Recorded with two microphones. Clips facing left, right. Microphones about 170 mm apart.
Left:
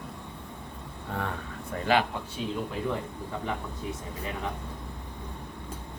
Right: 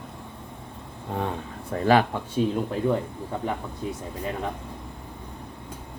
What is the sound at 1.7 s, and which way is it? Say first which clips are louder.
Speech: right 6 dB; 40° right (ahead or behind).